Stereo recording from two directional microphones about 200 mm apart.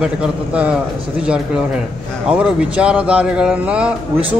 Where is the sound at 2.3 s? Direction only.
5° right (ahead or behind).